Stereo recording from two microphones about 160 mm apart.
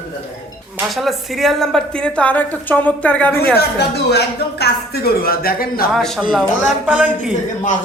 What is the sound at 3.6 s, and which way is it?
Speech, 90° left.